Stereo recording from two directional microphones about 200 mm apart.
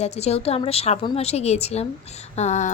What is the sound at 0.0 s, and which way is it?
A woman's voice, 30° left (ahead or behind).